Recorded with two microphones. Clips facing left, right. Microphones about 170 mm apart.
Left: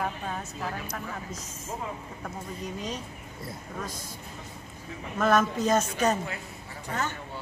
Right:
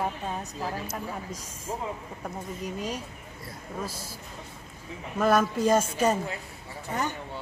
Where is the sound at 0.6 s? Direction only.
30° right (ahead or behind).